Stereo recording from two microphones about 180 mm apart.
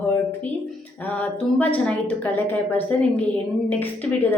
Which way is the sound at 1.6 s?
10° left (ahead or behind).